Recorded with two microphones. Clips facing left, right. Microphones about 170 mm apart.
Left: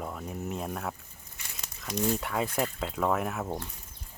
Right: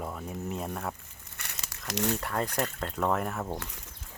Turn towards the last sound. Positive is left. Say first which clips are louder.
# left 1 dB
turn(degrees=0)  # may be behind; listen again after turning